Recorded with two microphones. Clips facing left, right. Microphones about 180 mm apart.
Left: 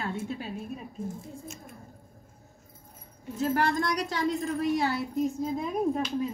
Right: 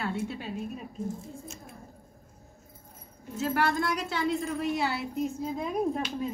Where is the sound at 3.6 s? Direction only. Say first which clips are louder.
Right 2 dB; 40° left (ahead or behind).